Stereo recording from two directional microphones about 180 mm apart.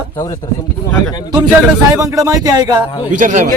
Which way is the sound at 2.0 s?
20° right (ahead or behind).